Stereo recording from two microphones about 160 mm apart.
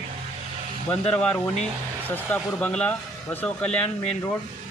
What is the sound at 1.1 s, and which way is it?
Speech, 10° left (ahead or behind).